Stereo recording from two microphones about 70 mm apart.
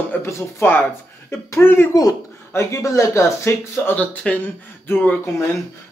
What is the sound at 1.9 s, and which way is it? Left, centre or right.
Speech, left.